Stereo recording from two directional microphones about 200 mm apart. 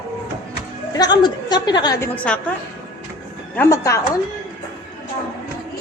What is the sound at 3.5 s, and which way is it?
Speech, 15° left (ahead or behind).